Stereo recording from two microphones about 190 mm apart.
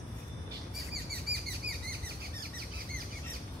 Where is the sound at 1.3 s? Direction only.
60° right (ahead or behind).